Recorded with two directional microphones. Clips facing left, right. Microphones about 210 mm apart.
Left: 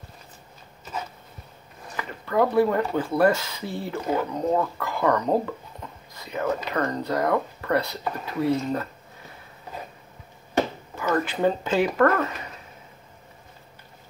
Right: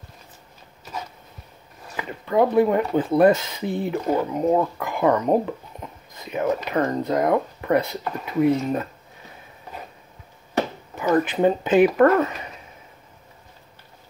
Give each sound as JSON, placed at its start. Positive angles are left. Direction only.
{"t": 2.0, "sound": "speech", "side_deg": -20}
{"t": 11.2, "sound": "speech", "side_deg": -20}